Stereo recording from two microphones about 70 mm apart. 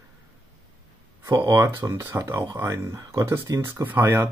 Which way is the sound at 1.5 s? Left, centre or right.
Right.